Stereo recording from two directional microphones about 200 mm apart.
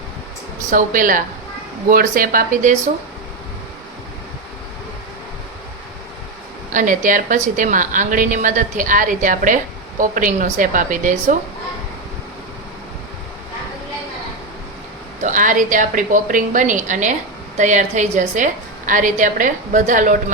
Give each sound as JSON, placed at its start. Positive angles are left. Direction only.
{"t": 0.7, "sound": "a woman's voice", "side_deg": -40}
{"t": 6.7, "sound": "a woman's voice", "side_deg": -40}
{"t": 15.2, "sound": "a woman's voice", "side_deg": -40}